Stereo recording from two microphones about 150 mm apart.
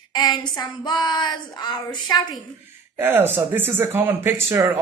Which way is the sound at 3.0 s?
15° right (ahead or behind).